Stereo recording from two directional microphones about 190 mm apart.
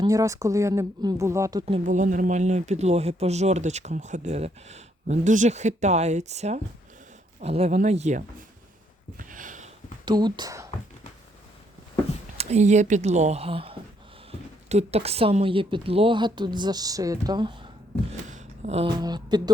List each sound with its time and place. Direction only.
0.0 s speech: 15° right (ahead or behind)
1.6 s speech: 40° right (ahead or behind)
9.1 s a sound: 45° right (ahead or behind)
10.1 s a woman's voice: 20° right (ahead or behind)
12.4 s a woman's voice: 35° right (ahead or behind)
18.3 s a sound: 40° right (ahead or behind)
18.9 s a woman's voice: 20° right (ahead or behind)